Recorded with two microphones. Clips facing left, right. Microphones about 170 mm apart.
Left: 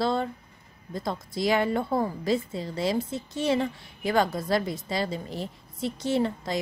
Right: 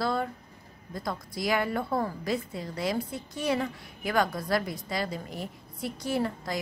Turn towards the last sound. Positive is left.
turn(degrees=25)  # may be behind; listen again after turning